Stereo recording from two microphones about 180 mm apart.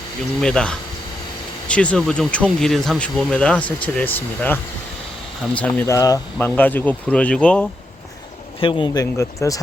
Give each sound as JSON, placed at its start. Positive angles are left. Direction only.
{"t": 0.4, "sound": "speech", "side_deg": 5}
{"t": 8.6, "sound": "speech", "side_deg": 25}